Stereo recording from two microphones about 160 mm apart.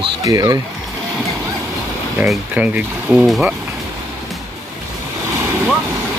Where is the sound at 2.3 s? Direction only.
10° right (ahead or behind).